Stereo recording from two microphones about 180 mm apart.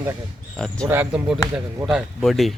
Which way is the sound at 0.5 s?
5° left (ahead or behind).